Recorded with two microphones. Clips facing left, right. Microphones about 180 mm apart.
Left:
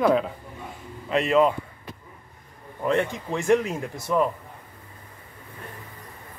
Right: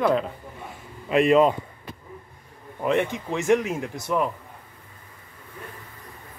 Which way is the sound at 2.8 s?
15° right (ahead or behind).